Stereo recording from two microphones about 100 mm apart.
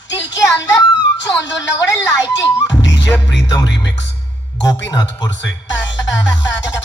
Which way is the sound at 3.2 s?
45° left (ahead or behind).